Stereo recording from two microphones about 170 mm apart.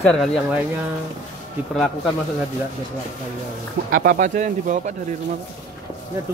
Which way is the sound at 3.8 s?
55° right (ahead or behind).